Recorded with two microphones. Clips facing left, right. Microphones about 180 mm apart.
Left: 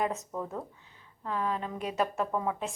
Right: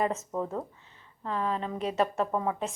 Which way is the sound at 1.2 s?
5° left (ahead or behind).